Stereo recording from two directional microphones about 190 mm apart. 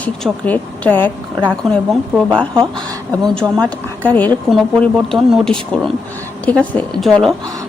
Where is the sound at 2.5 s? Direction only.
25° right (ahead or behind).